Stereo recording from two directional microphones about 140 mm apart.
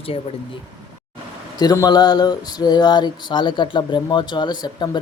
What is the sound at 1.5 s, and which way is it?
Speech, 25° left (ahead or behind).